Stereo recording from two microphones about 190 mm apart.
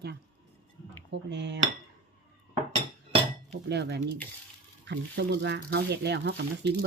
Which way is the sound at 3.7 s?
60° right (ahead or behind).